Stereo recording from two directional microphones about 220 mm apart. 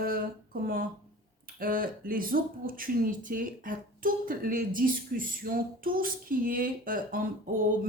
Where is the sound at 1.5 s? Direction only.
40° right (ahead or behind).